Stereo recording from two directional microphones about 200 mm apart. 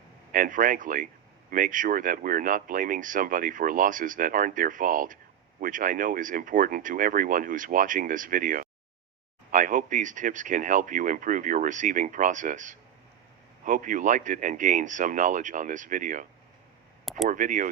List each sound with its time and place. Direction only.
0.3 s speech: 45° right (ahead or behind)
17.2 s speech: 40° right (ahead or behind)